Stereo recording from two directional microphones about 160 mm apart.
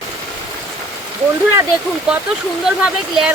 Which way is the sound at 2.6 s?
5° right (ahead or behind).